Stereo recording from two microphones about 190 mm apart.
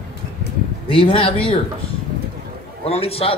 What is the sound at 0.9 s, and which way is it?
Speech, 30° left (ahead or behind).